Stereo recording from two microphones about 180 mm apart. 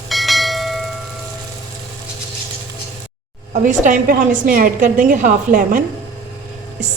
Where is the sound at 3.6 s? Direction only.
45° right (ahead or behind).